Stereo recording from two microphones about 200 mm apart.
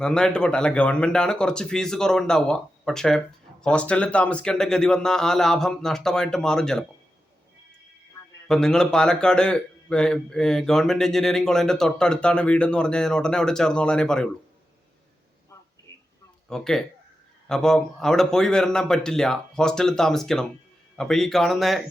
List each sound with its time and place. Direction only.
0.0 s a man's voice: 5° left (ahead or behind)
8.4 s a man's voice: 5° left (ahead or behind)
16.5 s a man's voice: centre (ahead or behind)